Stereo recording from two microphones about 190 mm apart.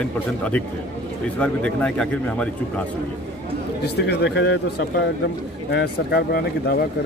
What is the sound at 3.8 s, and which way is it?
Speech, 60° left (ahead or behind).